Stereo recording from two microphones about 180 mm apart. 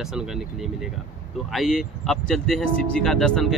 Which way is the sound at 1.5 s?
Centre (ahead or behind).